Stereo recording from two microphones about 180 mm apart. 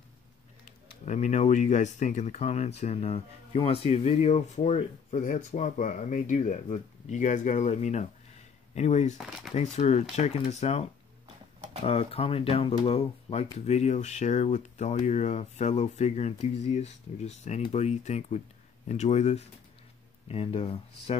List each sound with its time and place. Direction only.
0.7 s speech: 40° left (ahead or behind)